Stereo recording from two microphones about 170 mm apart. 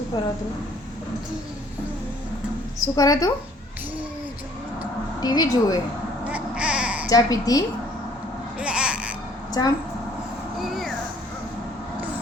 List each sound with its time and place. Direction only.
2.8 s a woman's voice: 20° left (ahead or behind)
5.2 s a woman's voice: 25° left (ahead or behind)
6.2 s baby cry: 5° right (ahead or behind)
7.1 s a woman's voice: 20° left (ahead or behind)
8.5 s a sound: 5° right (ahead or behind)
9.6 s a woman's voice: 20° left (ahead or behind)
10.6 s a sound: centre (ahead or behind)